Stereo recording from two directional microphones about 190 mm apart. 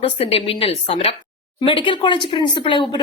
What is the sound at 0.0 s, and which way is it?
Speech, 30° left (ahead or behind).